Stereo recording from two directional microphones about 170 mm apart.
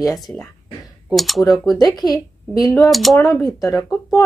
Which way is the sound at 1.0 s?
Centre (ahead or behind).